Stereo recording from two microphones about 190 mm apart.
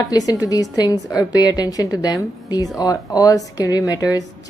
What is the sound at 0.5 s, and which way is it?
A woman's voice, 20° left (ahead or behind).